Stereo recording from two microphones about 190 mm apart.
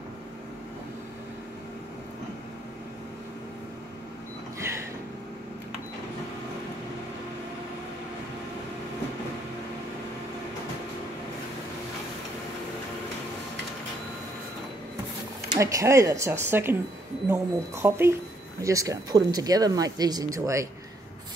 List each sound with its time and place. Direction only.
15.5 s speech: 15° right (ahead or behind)